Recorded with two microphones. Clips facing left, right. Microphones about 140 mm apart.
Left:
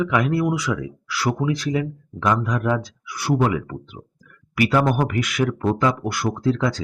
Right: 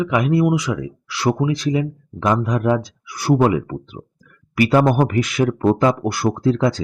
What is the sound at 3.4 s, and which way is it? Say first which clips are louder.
Speech: right 4 dB; 25° right (ahead or behind).